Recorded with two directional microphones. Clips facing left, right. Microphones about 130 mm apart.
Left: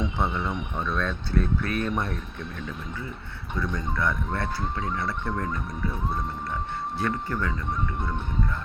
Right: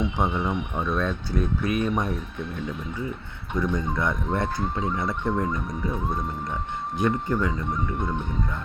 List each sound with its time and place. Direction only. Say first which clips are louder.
0.0 s speech: right 3 dB; 15° right (ahead or behind)
3.6 s speech: right 3 dB; 20° right (ahead or behind)
7.0 s speech: right 5 dB; 20° right (ahead or behind)